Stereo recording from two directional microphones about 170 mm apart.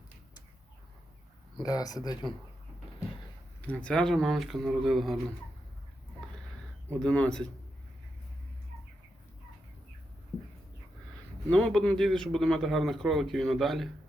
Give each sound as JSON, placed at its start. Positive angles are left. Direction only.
{"t": 1.6, "sound": "speech", "side_deg": 20}
{"t": 3.7, "sound": "a man's voice", "side_deg": 5}
{"t": 7.0, "sound": "a man's voice", "side_deg": 5}
{"t": 11.5, "sound": "a man's voice", "side_deg": 5}